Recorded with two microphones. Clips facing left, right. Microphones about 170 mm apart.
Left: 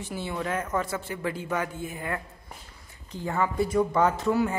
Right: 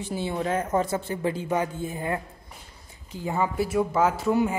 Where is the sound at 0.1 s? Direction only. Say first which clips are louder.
Right 4 dB; 25° right (ahead or behind).